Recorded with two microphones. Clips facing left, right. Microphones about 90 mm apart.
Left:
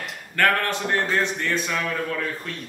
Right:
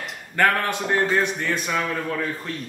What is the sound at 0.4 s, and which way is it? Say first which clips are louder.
Speech: right 1 dB; 15° right (ahead or behind).